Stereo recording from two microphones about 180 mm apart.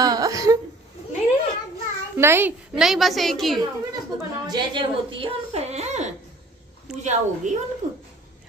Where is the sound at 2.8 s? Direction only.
Centre (ahead or behind).